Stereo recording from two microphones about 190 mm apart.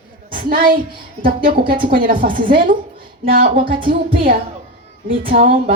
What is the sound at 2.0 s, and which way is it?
Speech, 50° right (ahead or behind).